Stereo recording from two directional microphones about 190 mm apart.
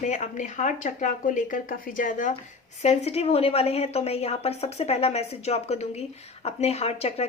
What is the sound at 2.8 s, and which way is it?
A woman's voice, 35° left (ahead or behind).